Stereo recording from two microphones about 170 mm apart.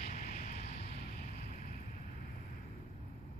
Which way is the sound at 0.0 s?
55° left (ahead or behind).